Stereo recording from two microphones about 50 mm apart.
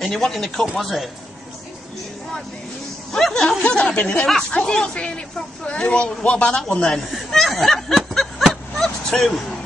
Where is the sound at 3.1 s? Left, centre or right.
Centre.